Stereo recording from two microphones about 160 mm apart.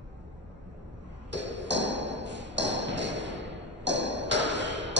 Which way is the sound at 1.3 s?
90° right.